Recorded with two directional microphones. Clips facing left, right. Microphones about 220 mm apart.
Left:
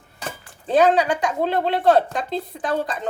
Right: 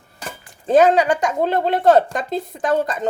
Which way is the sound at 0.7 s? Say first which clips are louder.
Right 3 dB; 45° right (ahead or behind).